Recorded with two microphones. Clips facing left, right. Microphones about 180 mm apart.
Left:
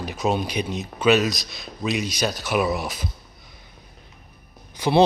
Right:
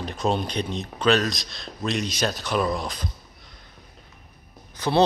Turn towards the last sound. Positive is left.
turn(degrees=10)  # may be behind; listen again after turning